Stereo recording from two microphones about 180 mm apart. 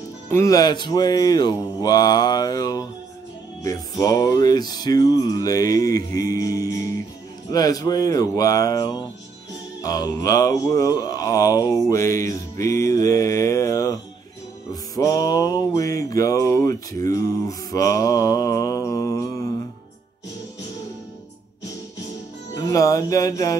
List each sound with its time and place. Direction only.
0.3 s music: 15° left (ahead or behind)
22.5 s speech: 20° left (ahead or behind)